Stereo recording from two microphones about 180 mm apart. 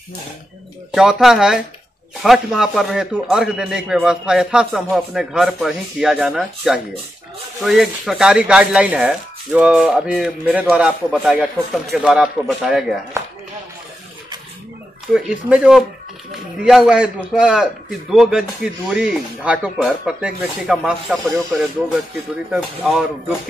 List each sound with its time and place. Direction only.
0.9 s speech: 5° right (ahead or behind)
13.2 s a sound: 15° right (ahead or behind)
15.1 s speech: 5° right (ahead or behind)